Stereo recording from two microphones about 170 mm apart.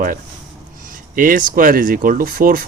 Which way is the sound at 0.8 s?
55° right (ahead or behind).